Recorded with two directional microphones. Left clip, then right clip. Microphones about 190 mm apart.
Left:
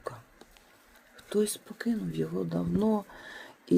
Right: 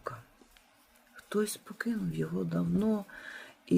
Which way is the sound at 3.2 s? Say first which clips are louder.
Even; centre (ahead or behind).